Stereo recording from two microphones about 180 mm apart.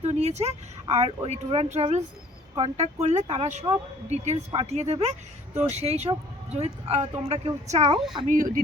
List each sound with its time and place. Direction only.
0.0 s speech: 35° right (ahead or behind)
8.3 s speech: 50° right (ahead or behind)